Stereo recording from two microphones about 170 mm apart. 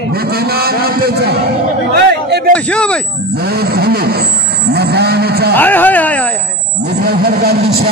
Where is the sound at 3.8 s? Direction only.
70° right (ahead or behind).